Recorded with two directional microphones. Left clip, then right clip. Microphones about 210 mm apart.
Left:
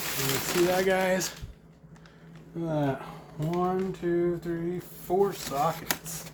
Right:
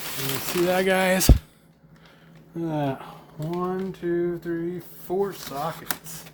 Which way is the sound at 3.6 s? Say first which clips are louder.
Left 1 dB; 30° right (ahead or behind).